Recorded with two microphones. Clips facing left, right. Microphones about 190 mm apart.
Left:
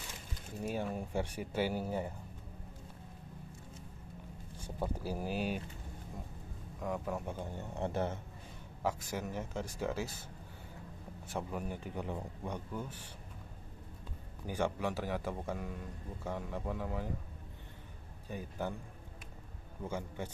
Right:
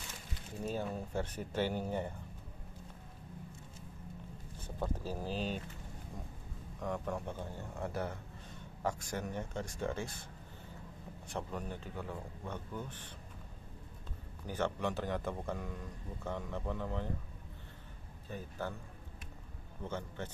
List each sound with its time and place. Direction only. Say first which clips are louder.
0.7 s a man's voice: left 1 dB; 15° left (ahead or behind)
4.6 s a man's voice: left 1 dB; 10° left (ahead or behind)
6.8 s a man's voice: left 1 dB; 5° left (ahead or behind); by 8.2 s 25° left (ahead or behind)
8.8 s speech: left 1 dB; 5° left (ahead or behind)
11.2 s a man's voice: left 2 dB; 5° left (ahead or behind)
14.4 s a man's voice: left 1 dB; 10° left (ahead or behind)
18.3 s a man's voice: left 2 dB; 15° left (ahead or behind)
19.8 s a man's voice: left 1 dB; 10° left (ahead or behind)